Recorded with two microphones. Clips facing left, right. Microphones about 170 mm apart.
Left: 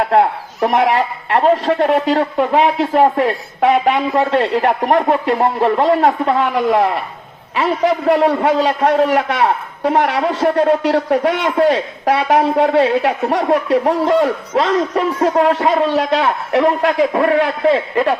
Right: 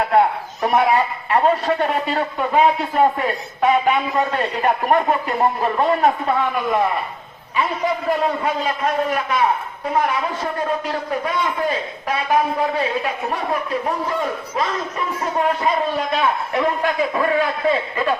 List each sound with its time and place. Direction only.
0.1 s a man's voice: 75° left (ahead or behind)